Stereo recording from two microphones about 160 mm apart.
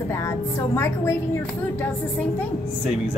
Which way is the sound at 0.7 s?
15° left (ahead or behind).